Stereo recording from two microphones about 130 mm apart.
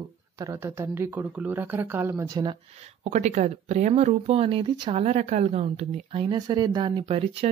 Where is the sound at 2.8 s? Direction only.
60° right (ahead or behind).